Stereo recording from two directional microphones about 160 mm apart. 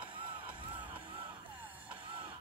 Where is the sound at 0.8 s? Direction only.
10° right (ahead or behind).